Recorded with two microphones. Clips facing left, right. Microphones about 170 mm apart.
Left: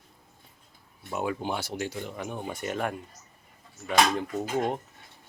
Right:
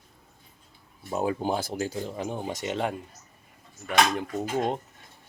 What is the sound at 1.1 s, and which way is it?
Speech, 35° right (ahead or behind).